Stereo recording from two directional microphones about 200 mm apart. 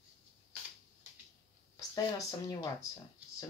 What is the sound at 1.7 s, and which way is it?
Speech, 15° left (ahead or behind).